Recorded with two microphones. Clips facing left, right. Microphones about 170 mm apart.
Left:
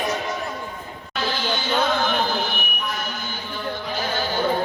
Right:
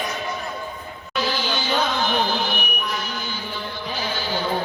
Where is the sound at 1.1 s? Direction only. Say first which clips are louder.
Right 1 dB; 55° left (ahead or behind).